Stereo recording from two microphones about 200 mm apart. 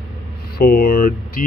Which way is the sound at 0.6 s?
45° left (ahead or behind).